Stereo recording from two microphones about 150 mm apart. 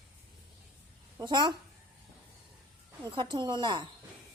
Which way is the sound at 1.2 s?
30° right (ahead or behind).